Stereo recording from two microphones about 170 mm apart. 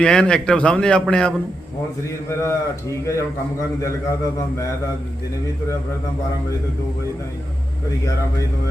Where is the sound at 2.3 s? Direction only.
15° left (ahead or behind).